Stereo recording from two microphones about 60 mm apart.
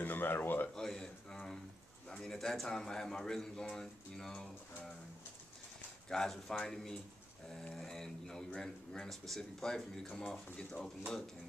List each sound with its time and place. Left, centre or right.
0.0 s speech: left
0.7 s a sound: centre
2.0 s a man's voice: centre
6.0 s a man's voice: centre